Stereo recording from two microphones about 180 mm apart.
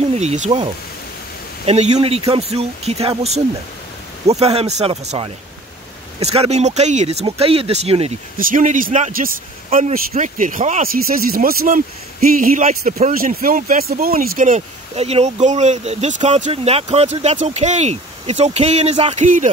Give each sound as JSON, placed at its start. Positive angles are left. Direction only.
{"t": 0.1, "sound": "speech", "side_deg": -35}
{"t": 1.7, "sound": "speech", "side_deg": -35}
{"t": 8.4, "sound": "speech", "side_deg": -50}